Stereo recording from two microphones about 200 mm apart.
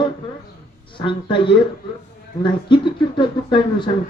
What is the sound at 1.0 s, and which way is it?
Speech, 25° left (ahead or behind).